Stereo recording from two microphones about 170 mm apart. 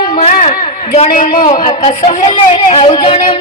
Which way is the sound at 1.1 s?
50° left (ahead or behind).